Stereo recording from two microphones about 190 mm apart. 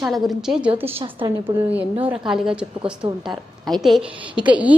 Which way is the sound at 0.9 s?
25° right (ahead or behind).